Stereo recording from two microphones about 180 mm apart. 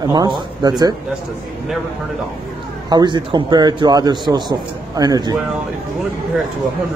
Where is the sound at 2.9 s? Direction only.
25° right (ahead or behind).